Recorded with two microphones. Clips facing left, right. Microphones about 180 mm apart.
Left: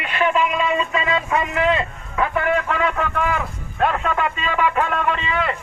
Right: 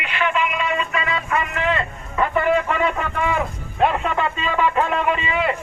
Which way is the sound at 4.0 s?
Centre (ahead or behind).